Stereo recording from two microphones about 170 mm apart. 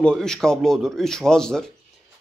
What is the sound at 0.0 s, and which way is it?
Speech, 5° left (ahead or behind).